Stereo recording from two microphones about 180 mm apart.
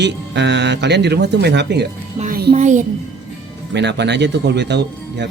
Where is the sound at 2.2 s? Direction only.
50° right (ahead or behind).